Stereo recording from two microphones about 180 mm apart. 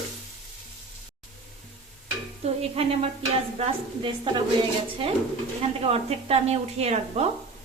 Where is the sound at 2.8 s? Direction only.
30° right (ahead or behind).